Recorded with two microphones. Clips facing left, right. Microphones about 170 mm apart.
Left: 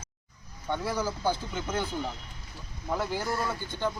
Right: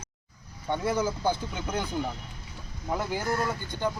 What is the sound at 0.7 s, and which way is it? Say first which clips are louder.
Speech: right 3 dB; 20° right (ahead or behind).